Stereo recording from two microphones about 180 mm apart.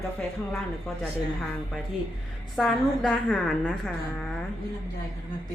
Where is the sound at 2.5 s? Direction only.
Centre (ahead or behind).